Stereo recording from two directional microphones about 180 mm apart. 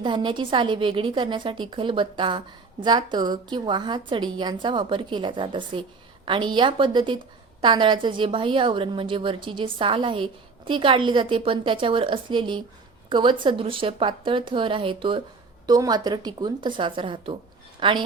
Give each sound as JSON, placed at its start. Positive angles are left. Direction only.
{"t": 0.0, "sound": "a woman's voice", "side_deg": -25}